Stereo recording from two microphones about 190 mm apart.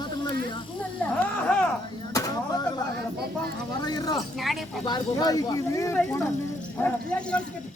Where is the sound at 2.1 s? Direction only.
20° left (ahead or behind).